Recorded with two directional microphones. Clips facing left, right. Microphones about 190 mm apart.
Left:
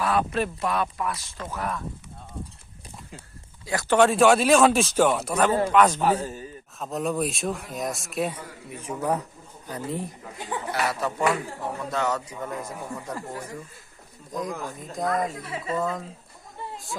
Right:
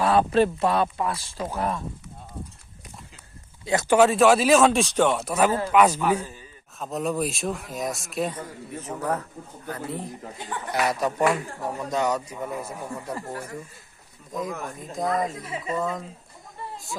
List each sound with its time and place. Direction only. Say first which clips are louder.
0.0 s a sound: right 4 dB; 30° right (ahead or behind)
0.3 s speech: right 5 dB; 30° right (ahead or behind)
3.8 s a man's voice: right 1 dB; 5° right (ahead or behind)
6.0 s speech: left 1 dB; 35° left (ahead or behind)
6.7 s a man's voice: even; centre (ahead or behind); by 10.0 s 15° left (ahead or behind)
10.7 s speech: right 4 dB; 15° right (ahead or behind)
14.3 s a man's voice: even; centre (ahead or behind)